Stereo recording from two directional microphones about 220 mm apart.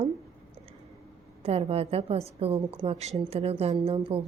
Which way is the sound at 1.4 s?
25° right (ahead or behind).